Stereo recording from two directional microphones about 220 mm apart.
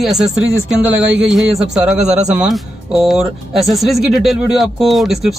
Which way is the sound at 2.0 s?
30° right (ahead or behind).